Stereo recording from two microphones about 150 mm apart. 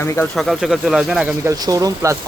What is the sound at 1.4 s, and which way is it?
Speech, 25° right (ahead or behind).